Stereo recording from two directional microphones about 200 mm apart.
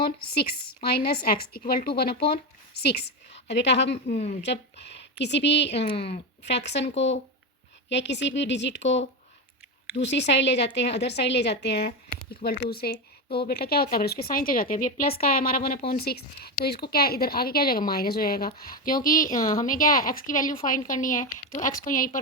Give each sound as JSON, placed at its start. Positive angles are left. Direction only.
{"t": 0.3, "sound": "speech", "side_deg": 55}
{"t": 6.9, "sound": "speech", "side_deg": 65}